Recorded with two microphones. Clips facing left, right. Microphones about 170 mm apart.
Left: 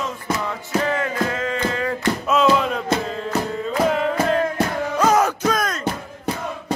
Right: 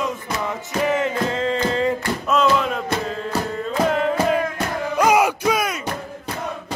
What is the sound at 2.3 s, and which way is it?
Music, centre (ahead or behind).